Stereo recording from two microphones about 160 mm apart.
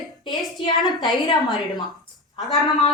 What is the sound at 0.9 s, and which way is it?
Speech, 25° left (ahead or behind).